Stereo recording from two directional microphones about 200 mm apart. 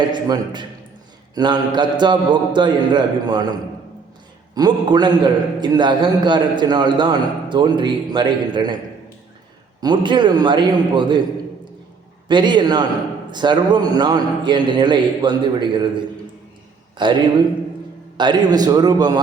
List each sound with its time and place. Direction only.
0.0 s a man's voice: 20° right (ahead or behind)
4.5 s a man's voice: 20° right (ahead or behind)
9.8 s a man's voice: 20° right (ahead or behind)
12.3 s a man's voice: 20° right (ahead or behind)